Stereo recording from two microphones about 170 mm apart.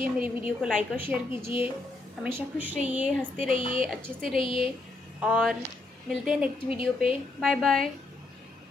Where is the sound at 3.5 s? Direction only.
35° left (ahead or behind).